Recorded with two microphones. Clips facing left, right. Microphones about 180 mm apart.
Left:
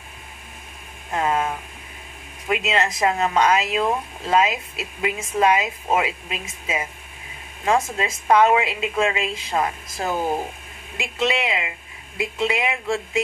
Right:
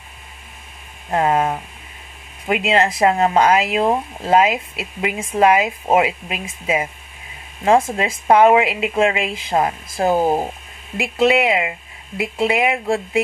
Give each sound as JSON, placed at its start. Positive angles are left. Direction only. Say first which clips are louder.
{"t": 1.1, "sound": "speech", "louder": "right 5 dB", "side_deg": -35}
{"t": 7.6, "sound": "speech", "louder": "right 6 dB", "side_deg": -30}